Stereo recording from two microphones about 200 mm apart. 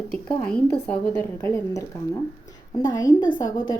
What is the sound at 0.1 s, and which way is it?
A woman's voice, 5° left (ahead or behind).